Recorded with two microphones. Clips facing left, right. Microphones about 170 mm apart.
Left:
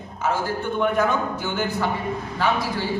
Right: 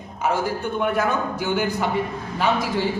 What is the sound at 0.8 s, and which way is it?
A man's voice, 10° right (ahead or behind).